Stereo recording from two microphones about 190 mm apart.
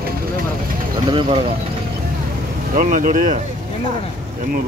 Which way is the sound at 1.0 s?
30° right (ahead or behind).